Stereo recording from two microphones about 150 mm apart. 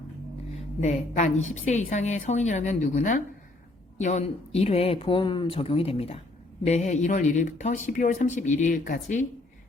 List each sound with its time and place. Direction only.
0.5 s a woman's voice: 50° left (ahead or behind)